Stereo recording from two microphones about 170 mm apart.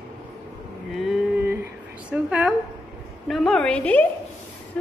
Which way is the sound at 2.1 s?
5° right (ahead or behind).